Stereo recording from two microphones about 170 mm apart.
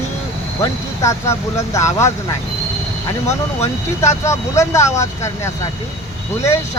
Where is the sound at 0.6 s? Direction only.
15° left (ahead or behind).